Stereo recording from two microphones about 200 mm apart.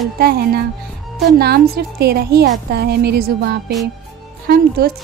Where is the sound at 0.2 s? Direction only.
50° right (ahead or behind).